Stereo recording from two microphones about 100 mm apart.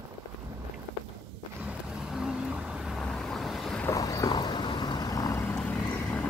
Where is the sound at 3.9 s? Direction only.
35° left (ahead or behind).